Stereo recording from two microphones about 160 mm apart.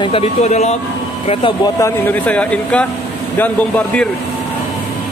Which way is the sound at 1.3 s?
30° left (ahead or behind).